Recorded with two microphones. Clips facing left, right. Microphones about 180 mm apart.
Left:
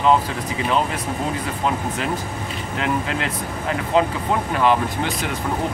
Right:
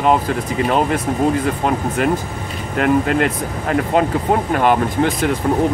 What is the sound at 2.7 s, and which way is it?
Speech, 50° right (ahead or behind).